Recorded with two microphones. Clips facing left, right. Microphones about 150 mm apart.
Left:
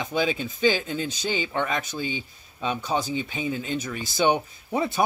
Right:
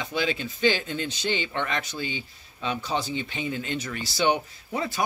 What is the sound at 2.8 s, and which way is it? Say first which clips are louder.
Speech: left 3 dB; 45° left (ahead or behind).